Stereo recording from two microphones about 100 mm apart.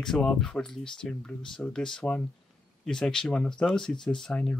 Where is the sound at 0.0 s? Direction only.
5° left (ahead or behind).